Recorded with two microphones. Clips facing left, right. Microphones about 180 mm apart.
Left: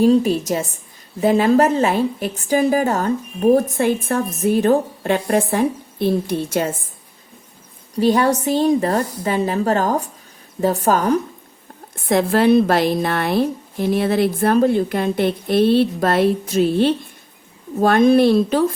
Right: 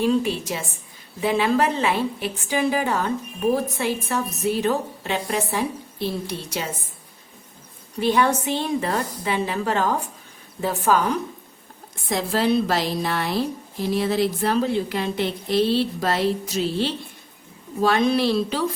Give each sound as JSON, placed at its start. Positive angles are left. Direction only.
{"t": 0.0, "sound": "a woman's voice", "side_deg": 40}
{"t": 7.9, "sound": "a woman's voice", "side_deg": 40}
{"t": 12.0, "sound": "a woman's voice", "side_deg": 55}